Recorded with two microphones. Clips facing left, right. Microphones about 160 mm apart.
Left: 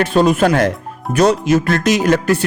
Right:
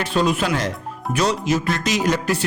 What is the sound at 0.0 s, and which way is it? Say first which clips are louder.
Speech: left 7 dB; 50° left (ahead or behind).